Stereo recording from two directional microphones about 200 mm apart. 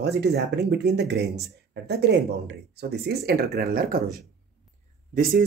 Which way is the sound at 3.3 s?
50° right (ahead or behind).